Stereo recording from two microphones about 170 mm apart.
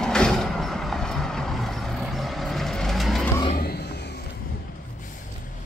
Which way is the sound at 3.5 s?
65° left (ahead or behind).